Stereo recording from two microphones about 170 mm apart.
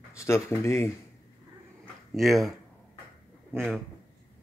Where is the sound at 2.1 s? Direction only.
Centre (ahead or behind).